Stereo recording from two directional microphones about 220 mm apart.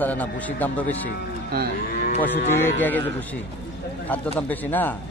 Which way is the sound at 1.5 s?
45° right (ahead or behind).